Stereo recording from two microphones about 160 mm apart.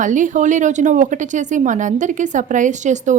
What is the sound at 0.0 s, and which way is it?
A woman's voice, 50° right (ahead or behind).